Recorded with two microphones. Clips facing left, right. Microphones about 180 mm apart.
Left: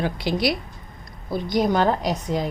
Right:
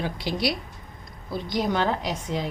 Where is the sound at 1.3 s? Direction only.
45° left (ahead or behind).